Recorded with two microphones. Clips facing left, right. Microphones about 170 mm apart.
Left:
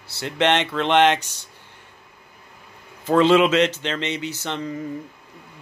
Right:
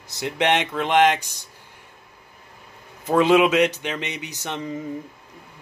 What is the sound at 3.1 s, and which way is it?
Speech, 15° right (ahead or behind).